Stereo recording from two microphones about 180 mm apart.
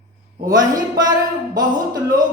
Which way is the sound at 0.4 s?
20° right (ahead or behind).